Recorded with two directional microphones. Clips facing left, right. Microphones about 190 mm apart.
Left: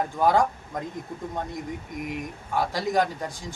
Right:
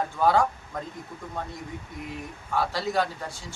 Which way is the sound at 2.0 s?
15° left (ahead or behind).